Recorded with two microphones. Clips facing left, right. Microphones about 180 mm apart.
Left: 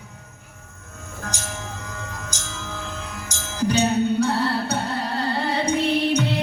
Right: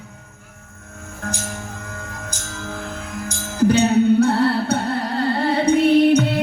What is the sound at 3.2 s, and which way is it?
Music, 55° right (ahead or behind).